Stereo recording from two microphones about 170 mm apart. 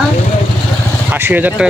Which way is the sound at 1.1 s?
10° right (ahead or behind).